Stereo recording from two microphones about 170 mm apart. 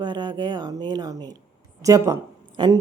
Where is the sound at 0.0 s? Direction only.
25° right (ahead or behind).